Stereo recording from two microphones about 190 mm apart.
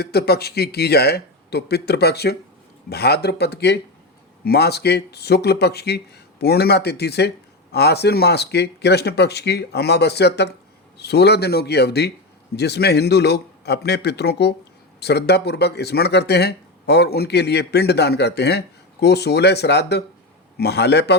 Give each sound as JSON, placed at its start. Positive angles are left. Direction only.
{"t": 0.0, "sound": "speech", "side_deg": 55}